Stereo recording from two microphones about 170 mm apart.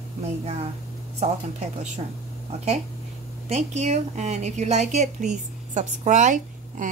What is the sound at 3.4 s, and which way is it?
A woman's voice, 40° right (ahead or behind).